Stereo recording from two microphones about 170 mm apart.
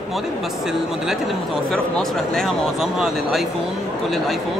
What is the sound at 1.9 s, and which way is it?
Speech, 5° left (ahead or behind).